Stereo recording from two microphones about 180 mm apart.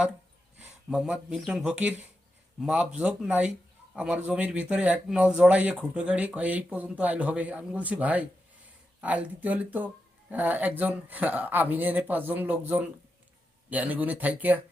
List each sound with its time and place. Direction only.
0.6 s speech: 5° right (ahead or behind)